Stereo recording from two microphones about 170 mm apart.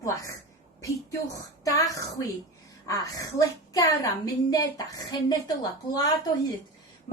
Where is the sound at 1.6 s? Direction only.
20° left (ahead or behind).